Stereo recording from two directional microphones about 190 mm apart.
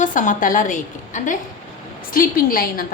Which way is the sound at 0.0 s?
40° left (ahead or behind).